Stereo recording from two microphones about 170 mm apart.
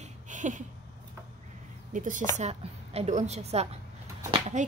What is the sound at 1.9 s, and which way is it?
Speech, 50° right (ahead or behind).